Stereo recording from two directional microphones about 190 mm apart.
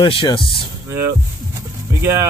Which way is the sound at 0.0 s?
25° left (ahead or behind).